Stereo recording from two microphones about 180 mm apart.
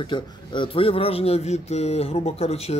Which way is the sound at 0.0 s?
25° left (ahead or behind).